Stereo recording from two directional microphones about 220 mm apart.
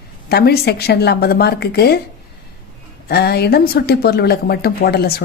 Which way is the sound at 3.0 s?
45° left (ahead or behind).